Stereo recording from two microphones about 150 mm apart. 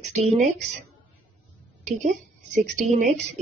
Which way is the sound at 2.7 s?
55° right (ahead or behind).